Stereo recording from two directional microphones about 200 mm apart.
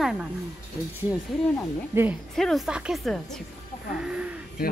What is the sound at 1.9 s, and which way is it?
Speech, 15° right (ahead or behind).